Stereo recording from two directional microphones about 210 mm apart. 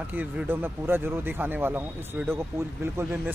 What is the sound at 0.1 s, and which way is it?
Speech, 10° right (ahead or behind).